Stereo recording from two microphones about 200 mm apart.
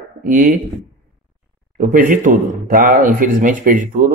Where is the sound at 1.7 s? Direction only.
45° right (ahead or behind).